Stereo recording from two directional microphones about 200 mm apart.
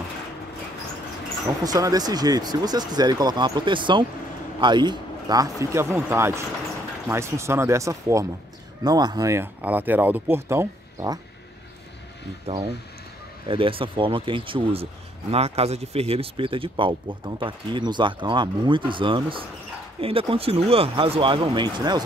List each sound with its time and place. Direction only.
1.6 s speech: 20° right (ahead or behind)
13.5 s speech: 25° right (ahead or behind)